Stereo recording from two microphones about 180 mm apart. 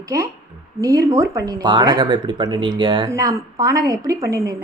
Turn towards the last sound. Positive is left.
turn(degrees=-20)  # may be behind; listen again after turning